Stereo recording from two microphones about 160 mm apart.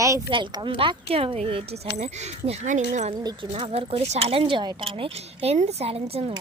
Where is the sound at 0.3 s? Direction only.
30° right (ahead or behind).